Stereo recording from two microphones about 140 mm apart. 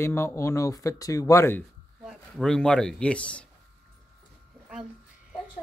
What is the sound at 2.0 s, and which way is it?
Speech, centre (ahead or behind).